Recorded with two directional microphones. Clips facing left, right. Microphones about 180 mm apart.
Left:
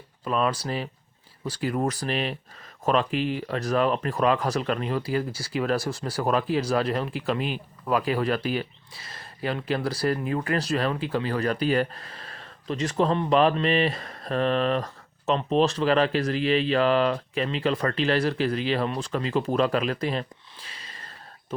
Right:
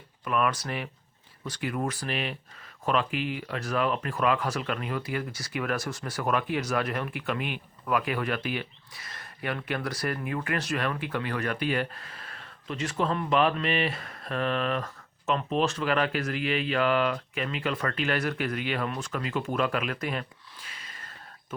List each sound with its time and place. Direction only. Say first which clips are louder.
0.3 s speech: left 2 dB; 30° left (ahead or behind)